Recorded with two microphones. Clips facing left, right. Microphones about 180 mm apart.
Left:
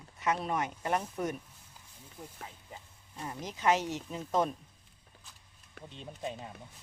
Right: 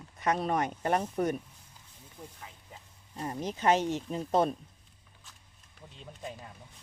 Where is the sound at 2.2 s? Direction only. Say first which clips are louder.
Even; 10° left (ahead or behind).